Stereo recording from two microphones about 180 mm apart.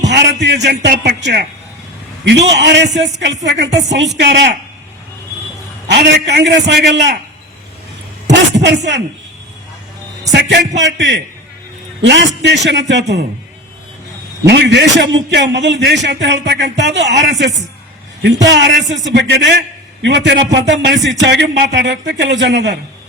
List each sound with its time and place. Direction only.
0.1 s a man's voice: 75° right (ahead or behind)
5.9 s a man's voice: 70° right (ahead or behind)
8.3 s a sound: 75° right (ahead or behind)
10.8 s a man's voice: 80° right
14.4 s a man's voice: 75° right (ahead or behind)